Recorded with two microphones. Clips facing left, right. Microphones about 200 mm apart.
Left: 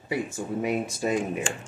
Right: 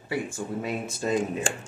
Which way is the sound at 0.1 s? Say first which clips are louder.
Left 1 dB; 15° left (ahead or behind).